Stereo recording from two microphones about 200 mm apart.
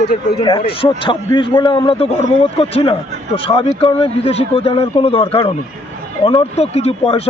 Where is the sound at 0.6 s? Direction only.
25° left (ahead or behind).